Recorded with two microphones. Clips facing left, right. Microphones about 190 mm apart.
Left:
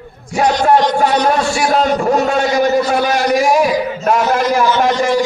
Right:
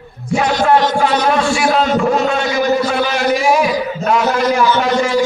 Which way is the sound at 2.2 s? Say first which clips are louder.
Left 1 dB; 40° left (ahead or behind).